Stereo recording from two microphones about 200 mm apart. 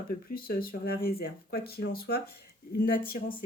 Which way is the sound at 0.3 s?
45° left (ahead or behind).